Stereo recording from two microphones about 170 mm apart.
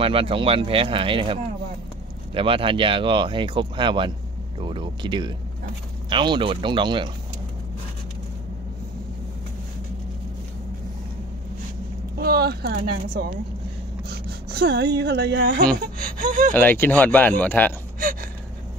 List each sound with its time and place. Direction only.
0.0 s speech: 30° right (ahead or behind)
12.2 s speech: 65° right (ahead or behind)
16.0 s speech: 55° right (ahead or behind)
16.5 s speech: 10° left (ahead or behind)